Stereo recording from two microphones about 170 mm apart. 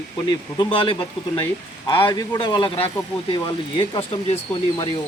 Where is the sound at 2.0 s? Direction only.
25° left (ahead or behind).